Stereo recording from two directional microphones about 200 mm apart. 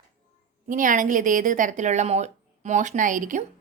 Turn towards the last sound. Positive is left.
turn(degrees=-40)  # may be behind; listen again after turning